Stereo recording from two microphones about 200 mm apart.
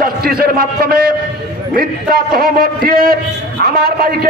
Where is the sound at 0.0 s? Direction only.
50° right (ahead or behind).